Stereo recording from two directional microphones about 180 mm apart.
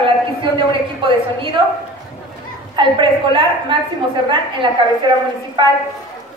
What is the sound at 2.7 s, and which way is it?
A woman's voice, 25° right (ahead or behind).